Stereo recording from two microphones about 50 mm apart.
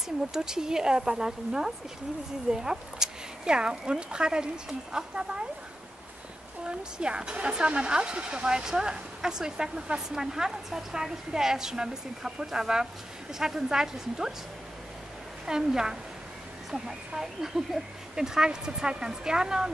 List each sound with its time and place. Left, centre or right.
0.3 s speech: centre
6.6 s speech: centre
15.4 s speech: centre